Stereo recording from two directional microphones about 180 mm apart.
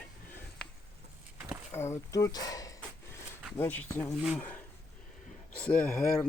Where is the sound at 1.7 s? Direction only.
15° left (ahead or behind).